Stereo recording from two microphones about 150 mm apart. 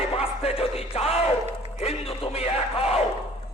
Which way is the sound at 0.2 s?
40° left (ahead or behind).